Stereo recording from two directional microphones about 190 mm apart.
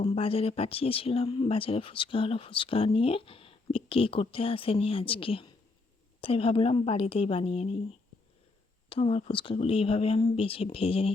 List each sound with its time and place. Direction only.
0.0 s speech: 30° left (ahead or behind)
8.9 s speech: 30° left (ahead or behind)